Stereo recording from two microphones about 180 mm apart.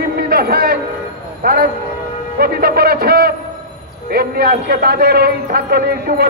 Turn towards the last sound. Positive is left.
turn(degrees=-60)  # may be behind; listen again after turning